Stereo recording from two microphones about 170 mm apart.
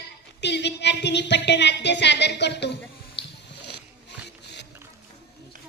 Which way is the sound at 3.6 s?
85° left.